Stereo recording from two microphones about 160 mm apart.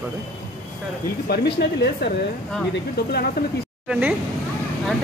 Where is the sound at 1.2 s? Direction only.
85° left.